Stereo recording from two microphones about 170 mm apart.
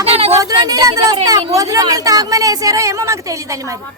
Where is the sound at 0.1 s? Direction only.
35° right (ahead or behind).